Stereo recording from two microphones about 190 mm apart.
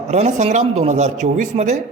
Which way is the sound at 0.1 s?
40° right (ahead or behind).